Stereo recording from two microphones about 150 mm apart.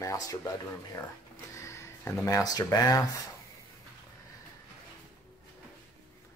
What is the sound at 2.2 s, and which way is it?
Speech, 25° left (ahead or behind).